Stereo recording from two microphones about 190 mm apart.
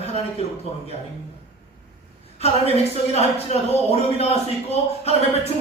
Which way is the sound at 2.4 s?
35° left (ahead or behind).